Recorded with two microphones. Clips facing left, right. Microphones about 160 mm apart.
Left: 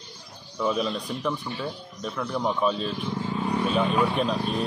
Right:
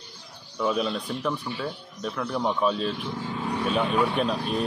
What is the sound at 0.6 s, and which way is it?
Speech, centre (ahead or behind).